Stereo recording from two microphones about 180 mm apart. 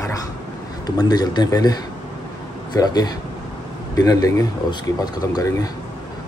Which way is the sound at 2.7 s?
20° left (ahead or behind).